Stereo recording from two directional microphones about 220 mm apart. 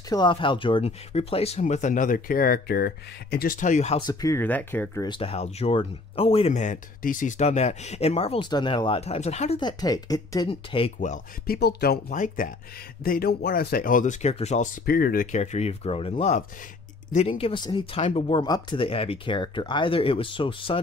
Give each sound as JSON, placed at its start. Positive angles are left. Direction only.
{"t": 0.1, "sound": "speech", "side_deg": 20}
{"t": 4.0, "sound": "speech", "side_deg": 15}
{"t": 5.0, "sound": "speech", "side_deg": 25}